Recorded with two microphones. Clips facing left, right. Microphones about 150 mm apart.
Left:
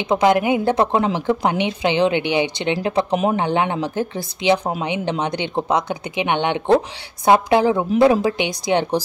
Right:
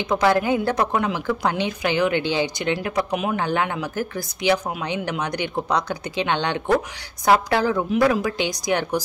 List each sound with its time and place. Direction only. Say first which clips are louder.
0.0 s a woman's voice: left 3 dB; 20° left (ahead or behind)